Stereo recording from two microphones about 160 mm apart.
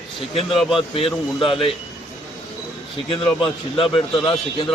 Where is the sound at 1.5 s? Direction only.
35° left (ahead or behind).